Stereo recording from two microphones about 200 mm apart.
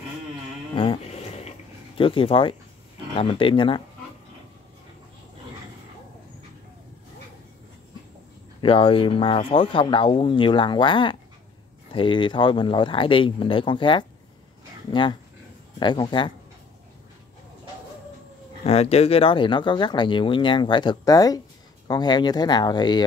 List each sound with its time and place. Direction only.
0.7 s a sound: 30° left (ahead or behind)
2.0 s speech: 25° left (ahead or behind)
8.5 s speech: 25° left (ahead or behind)
18.6 s speech: 30° left (ahead or behind)